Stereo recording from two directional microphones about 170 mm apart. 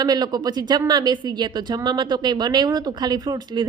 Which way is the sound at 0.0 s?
25° right (ahead or behind).